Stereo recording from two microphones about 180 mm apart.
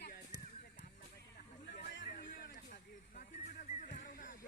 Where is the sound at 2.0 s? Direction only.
50° left (ahead or behind).